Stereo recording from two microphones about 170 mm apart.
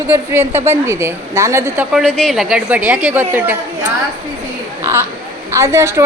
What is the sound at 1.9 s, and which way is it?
A woman's voice, centre (ahead or behind).